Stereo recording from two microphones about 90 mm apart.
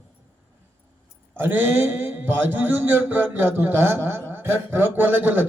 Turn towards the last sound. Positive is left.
turn(degrees=-20)  # may be behind; listen again after turning